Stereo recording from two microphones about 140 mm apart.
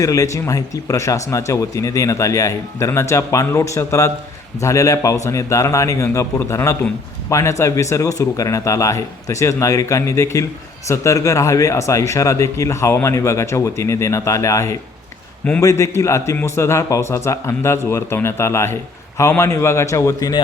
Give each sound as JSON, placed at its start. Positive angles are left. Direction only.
{"t": 0.0, "sound": "a man's voice", "side_deg": 25}